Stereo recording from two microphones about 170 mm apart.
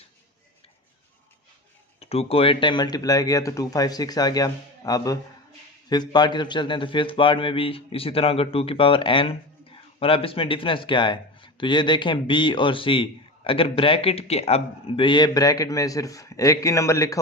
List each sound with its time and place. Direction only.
2.0 s a man's voice: 35° left (ahead or behind); by 17.2 s 20° left (ahead or behind)